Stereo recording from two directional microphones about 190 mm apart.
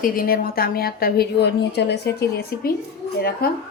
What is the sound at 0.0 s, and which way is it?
A woman's voice, 50° left (ahead or behind).